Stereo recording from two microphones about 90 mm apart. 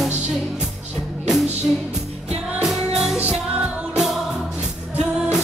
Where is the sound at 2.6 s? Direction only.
5° right (ahead or behind).